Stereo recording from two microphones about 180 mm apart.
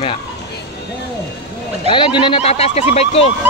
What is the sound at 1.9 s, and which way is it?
Speech, 25° left (ahead or behind).